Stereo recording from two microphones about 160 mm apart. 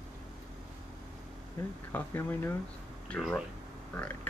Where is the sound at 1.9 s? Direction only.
10° left (ahead or behind).